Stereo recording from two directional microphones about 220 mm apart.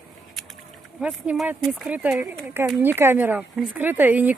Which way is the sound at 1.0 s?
5° right (ahead or behind).